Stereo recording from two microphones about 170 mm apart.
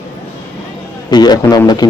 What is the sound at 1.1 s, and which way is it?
Speech, 25° left (ahead or behind).